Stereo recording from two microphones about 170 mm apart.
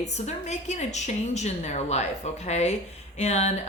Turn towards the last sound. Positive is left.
turn(degrees=40)  # may be behind; listen again after turning